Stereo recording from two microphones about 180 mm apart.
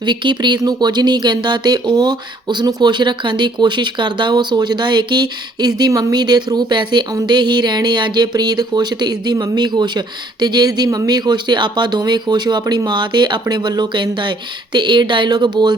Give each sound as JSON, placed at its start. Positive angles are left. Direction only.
{"t": 0.0, "sound": "speech", "side_deg": -25}